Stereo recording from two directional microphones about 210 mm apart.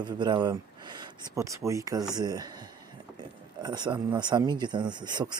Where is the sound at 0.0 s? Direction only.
20° right (ahead or behind).